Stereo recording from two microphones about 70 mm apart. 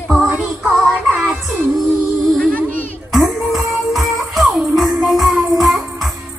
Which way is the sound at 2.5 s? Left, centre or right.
Left.